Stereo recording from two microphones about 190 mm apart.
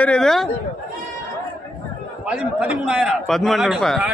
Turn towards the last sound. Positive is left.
turn(degrees=0)  # may be behind; listen again after turning